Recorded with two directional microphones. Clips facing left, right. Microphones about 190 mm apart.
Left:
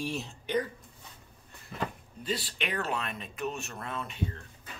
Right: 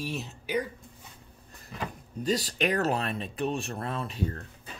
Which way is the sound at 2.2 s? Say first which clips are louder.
Right 7 dB; 40° right (ahead or behind).